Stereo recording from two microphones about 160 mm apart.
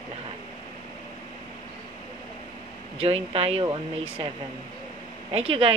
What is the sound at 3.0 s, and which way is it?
Speech, 40° right (ahead or behind).